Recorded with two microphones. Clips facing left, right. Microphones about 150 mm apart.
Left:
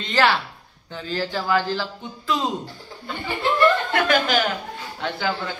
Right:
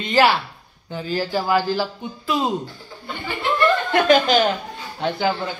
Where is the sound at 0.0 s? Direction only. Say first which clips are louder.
Right 3 dB; 10° right (ahead or behind).